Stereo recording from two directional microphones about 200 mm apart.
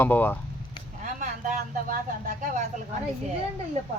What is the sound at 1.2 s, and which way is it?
Speech, 40° right (ahead or behind).